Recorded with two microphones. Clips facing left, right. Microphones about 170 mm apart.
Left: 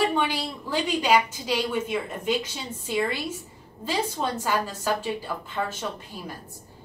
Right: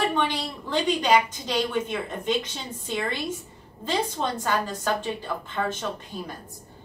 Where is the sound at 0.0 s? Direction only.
10° left (ahead or behind).